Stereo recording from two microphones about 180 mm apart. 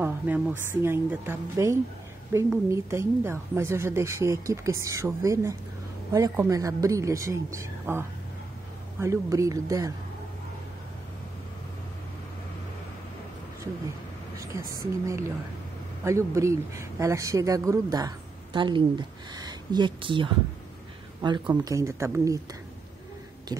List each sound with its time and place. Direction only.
0.0 s a woman's voice: 10° right (ahead or behind)
9.0 s speech: 15° right (ahead or behind)
14.3 s a sound: 15° right (ahead or behind)
16.0 s speech: 15° right (ahead or behind)
23.5 s speech: 25° right (ahead or behind)